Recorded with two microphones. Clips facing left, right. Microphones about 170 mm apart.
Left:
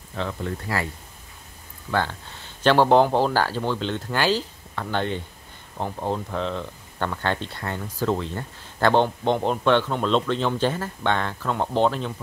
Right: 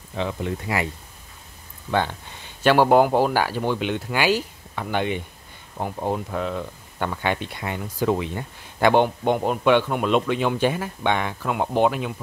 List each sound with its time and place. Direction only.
0.1 s speech: 15° right (ahead or behind)
1.9 s speech: 15° right (ahead or behind)